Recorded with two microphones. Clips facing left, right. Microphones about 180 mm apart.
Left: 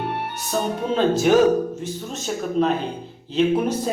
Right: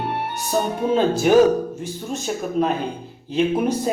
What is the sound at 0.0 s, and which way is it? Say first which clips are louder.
Music: right 2 dB; 35° right (ahead or behind).